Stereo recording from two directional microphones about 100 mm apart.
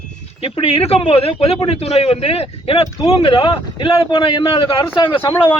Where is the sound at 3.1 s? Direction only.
65° left (ahead or behind).